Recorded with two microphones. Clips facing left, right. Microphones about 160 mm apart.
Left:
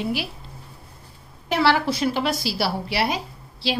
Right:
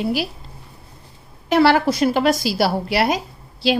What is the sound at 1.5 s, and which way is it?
A woman's voice, 50° right (ahead or behind).